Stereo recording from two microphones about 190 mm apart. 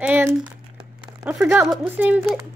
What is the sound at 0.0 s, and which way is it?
Crumpling, 10° right (ahead or behind).